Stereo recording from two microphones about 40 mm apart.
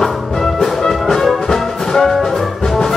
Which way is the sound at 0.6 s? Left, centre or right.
Centre.